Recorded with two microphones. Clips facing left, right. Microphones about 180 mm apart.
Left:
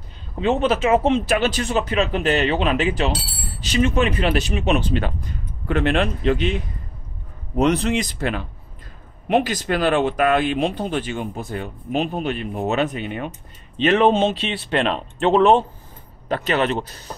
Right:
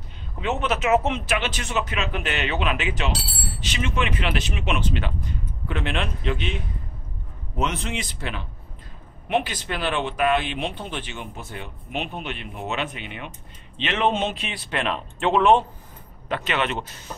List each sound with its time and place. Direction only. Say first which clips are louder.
0.4 s speech: left 6 dB; 30° left (ahead or behind)
7.5 s speech: left 9 dB; 35° left (ahead or behind)